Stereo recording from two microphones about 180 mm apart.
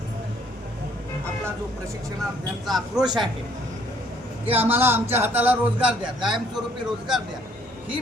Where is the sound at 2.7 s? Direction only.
Centre (ahead or behind).